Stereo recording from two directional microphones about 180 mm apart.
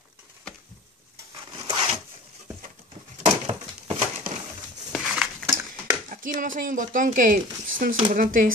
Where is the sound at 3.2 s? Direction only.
35° right (ahead or behind).